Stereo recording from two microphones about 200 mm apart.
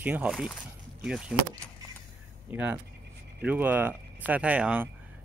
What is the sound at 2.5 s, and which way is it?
Speech, 10° right (ahead or behind).